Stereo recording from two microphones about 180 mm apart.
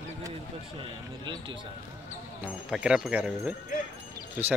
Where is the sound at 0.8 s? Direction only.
25° right (ahead or behind).